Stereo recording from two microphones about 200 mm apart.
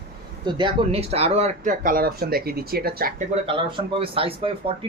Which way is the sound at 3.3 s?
25° right (ahead or behind).